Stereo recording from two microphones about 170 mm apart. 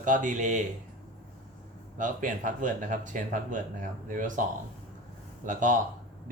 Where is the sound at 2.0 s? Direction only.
50° right (ahead or behind).